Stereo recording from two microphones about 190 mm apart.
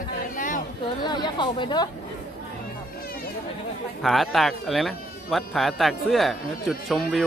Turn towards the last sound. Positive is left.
turn(degrees=0)  # may be behind; listen again after turning